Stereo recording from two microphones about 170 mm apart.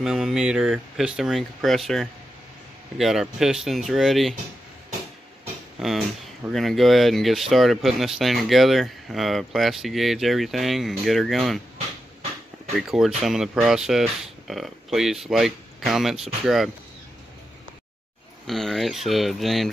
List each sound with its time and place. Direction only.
0.0 s speech: 5° right (ahead or behind)
5.8 s speech: centre (ahead or behind)
12.7 s speech: 5° right (ahead or behind)
18.5 s speech: centre (ahead or behind)